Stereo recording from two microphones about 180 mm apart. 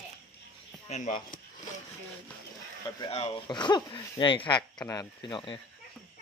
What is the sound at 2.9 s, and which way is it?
Speech, 30° left (ahead or behind).